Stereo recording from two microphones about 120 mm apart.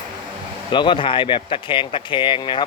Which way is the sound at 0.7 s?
40° left (ahead or behind).